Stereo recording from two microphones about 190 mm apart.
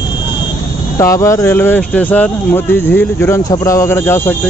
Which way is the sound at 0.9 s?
15° left (ahead or behind).